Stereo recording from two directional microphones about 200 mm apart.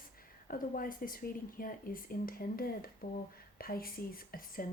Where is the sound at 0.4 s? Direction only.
45° left (ahead or behind).